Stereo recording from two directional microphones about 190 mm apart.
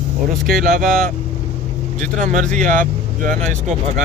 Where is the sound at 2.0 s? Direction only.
40° right (ahead or behind).